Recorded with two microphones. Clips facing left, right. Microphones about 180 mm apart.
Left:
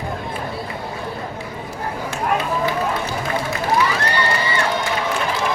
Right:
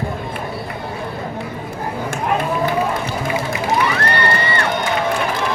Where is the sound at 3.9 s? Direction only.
60° right (ahead or behind).